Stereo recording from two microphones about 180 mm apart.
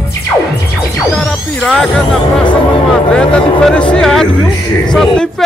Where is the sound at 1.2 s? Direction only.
Centre (ahead or behind).